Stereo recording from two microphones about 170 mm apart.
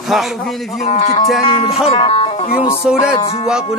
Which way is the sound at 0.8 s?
40° left (ahead or behind).